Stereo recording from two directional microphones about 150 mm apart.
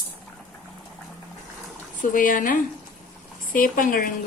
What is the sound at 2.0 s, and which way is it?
Speech, 60° left (ahead or behind).